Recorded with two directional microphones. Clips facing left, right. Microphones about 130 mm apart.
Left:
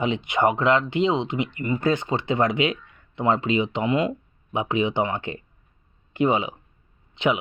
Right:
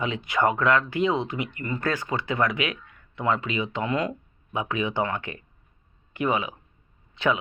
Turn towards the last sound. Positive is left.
turn(degrees=15)  # may be behind; listen again after turning